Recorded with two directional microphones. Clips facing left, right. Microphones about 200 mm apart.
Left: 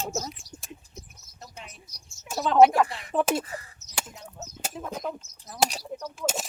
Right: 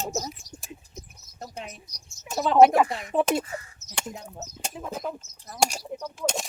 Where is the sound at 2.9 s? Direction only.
45° right (ahead or behind).